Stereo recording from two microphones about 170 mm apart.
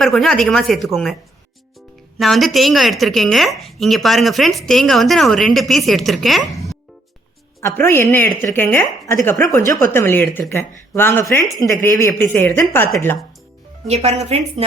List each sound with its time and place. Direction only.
0.0 s speech: centre (ahead or behind)
2.1 s speech: centre (ahead or behind)
7.6 s a woman's voice: 15° left (ahead or behind)
13.8 s a woman's voice: 40° right (ahead or behind)